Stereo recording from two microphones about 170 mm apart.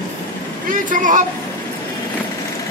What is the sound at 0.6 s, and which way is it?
Speech, 50° right (ahead or behind).